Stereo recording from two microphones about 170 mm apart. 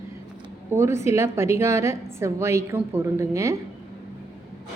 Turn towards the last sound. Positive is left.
turn(degrees=-20)  # may be behind; listen again after turning